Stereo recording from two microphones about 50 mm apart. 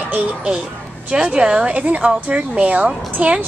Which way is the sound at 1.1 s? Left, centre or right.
Centre.